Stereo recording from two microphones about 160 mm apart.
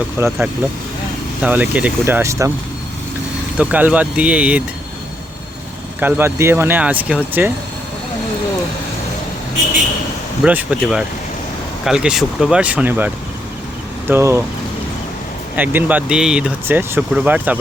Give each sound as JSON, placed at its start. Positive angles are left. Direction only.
{"t": 0.3, "sound": "speech", "side_deg": -5}
{"t": 3.6, "sound": "speech", "side_deg": -10}
{"t": 6.0, "sound": "speech", "side_deg": -10}
{"t": 10.4, "sound": "speech", "side_deg": -10}
{"t": 14.1, "sound": "speech", "side_deg": -15}
{"t": 15.5, "sound": "speech", "side_deg": -10}